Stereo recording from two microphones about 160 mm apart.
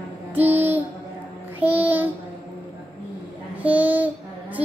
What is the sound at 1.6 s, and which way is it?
Child singing, 10° right (ahead or behind).